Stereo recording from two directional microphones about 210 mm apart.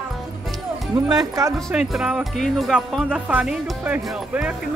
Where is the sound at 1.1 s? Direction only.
15° right (ahead or behind).